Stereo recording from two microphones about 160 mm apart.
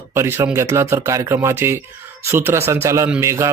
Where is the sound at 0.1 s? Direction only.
15° right (ahead or behind).